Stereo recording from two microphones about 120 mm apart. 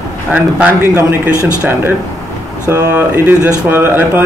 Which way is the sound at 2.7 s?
15° right (ahead or behind).